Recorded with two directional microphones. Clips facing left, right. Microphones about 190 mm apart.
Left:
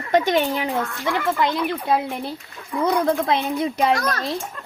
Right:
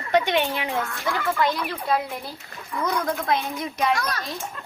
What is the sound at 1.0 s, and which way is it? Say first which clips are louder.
Speech: left 2 dB; 20° left (ahead or behind).